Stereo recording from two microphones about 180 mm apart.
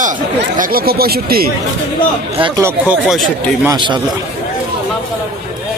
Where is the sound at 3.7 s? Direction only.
25° right (ahead or behind).